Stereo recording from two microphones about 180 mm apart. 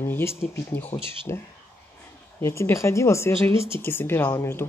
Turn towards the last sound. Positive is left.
turn(degrees=15)  # may be behind; listen again after turning